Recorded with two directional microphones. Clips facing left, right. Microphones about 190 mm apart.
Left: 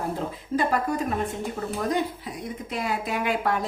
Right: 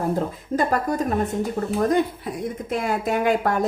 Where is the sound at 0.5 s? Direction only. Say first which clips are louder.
Right 2 dB; 45° right (ahead or behind).